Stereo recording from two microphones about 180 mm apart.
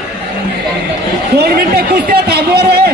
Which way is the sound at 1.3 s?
60° right (ahead or behind).